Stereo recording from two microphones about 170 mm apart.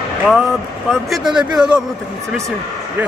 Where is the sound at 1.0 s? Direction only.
Centre (ahead or behind).